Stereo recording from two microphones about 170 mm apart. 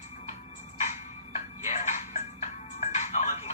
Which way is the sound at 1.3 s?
45° left (ahead or behind).